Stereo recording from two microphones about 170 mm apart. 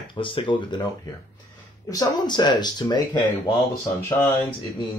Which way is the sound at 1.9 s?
25° left (ahead or behind).